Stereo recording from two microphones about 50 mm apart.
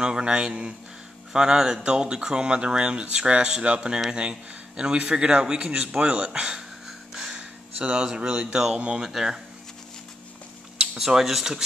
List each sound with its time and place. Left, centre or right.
0.0 s a man's voice: centre
9.1 s a man's voice: centre
10.8 s speech: centre